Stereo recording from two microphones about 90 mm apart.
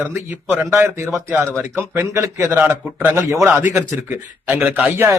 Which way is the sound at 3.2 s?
35° right (ahead or behind).